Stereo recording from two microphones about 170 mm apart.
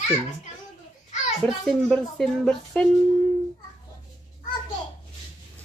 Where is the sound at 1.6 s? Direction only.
5° left (ahead or behind).